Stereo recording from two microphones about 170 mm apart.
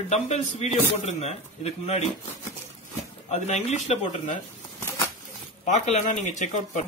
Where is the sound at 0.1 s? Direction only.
40° left (ahead or behind).